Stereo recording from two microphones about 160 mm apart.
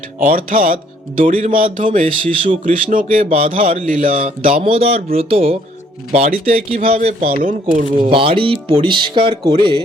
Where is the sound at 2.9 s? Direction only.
55° right (ahead or behind).